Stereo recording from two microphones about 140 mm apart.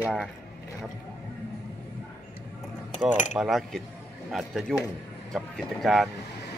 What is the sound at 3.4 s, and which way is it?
A man's voice, centre (ahead or behind).